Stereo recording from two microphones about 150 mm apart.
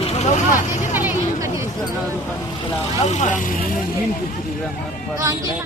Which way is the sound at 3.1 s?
50° left (ahead or behind).